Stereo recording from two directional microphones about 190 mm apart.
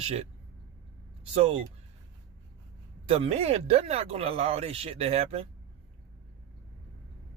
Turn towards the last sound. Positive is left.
turn(degrees=-30)  # may be behind; listen again after turning